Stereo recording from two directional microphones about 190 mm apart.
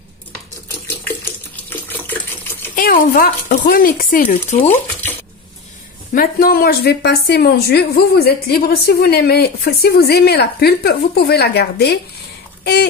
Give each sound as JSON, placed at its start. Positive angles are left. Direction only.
{"t": 0.7, "sound": "water tap", "side_deg": 10}
{"t": 2.7, "sound": "speech", "side_deg": 45}
{"t": 6.1, "sound": "speech", "side_deg": 50}